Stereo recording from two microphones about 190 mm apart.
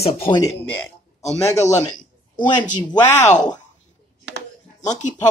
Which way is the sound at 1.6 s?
40° left (ahead or behind).